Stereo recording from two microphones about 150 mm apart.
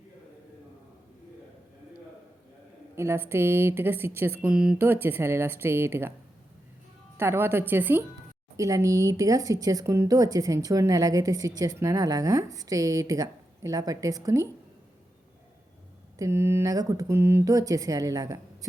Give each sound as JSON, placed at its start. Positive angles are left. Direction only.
{"t": 2.9, "sound": "speech", "side_deg": -15}
{"t": 7.2, "sound": "speech", "side_deg": -15}
{"t": 16.1, "sound": "speech", "side_deg": -20}